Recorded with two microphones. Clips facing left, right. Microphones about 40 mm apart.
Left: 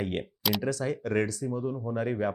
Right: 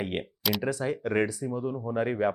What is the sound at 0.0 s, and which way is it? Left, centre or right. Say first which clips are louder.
Speech: even; centre.